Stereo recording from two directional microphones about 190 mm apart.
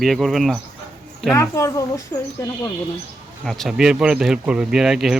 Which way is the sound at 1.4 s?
15° left (ahead or behind).